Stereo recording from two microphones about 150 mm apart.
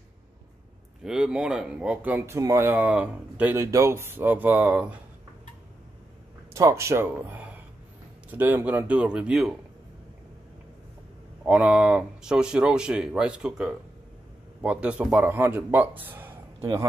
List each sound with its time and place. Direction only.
1.0 s speech: 5° right (ahead or behind)
6.5 s a man's voice: 20° right (ahead or behind)
11.4 s speech: 5° right (ahead or behind)